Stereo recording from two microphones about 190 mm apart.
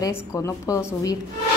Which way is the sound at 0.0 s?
15° left (ahead or behind).